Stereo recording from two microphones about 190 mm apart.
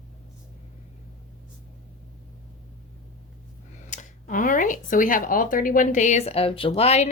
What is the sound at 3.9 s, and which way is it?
Speech, 45° left (ahead or behind).